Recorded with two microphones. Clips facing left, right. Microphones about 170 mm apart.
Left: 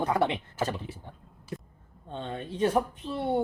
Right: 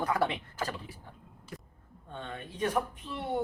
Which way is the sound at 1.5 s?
25° left (ahead or behind).